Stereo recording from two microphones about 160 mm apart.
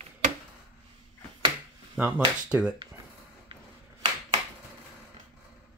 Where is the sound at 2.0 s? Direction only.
10° right (ahead or behind).